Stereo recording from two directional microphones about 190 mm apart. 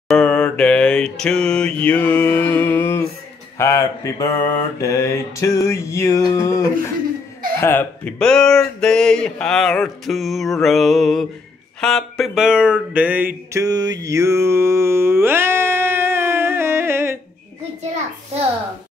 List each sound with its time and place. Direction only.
0.1 s mantra: 5° left (ahead or behind)
7.6 s speech: 10° left (ahead or behind); by 13.3 s 10° right (ahead or behind)
13.5 s mantra: 15° right (ahead or behind)